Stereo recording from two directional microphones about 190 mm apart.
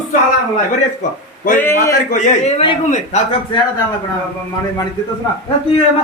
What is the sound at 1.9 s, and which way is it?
A man's voice, 40° left (ahead or behind).